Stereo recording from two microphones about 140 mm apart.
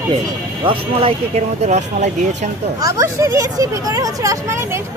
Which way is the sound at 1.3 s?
55° right (ahead or behind).